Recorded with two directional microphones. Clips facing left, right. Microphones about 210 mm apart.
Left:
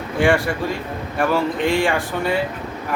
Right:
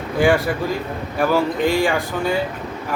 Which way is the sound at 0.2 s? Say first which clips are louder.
Right 1 dB; centre (ahead or behind).